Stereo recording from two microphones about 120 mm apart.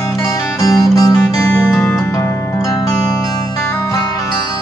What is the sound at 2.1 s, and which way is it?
Music, 25° left (ahead or behind).